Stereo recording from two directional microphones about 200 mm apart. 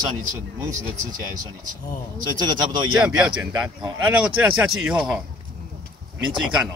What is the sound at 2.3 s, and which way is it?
Speech, 20° right (ahead or behind).